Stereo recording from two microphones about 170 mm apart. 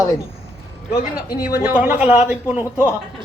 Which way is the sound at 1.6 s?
10° right (ahead or behind).